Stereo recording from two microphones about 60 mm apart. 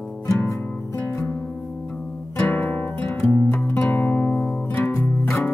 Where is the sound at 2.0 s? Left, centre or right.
Centre.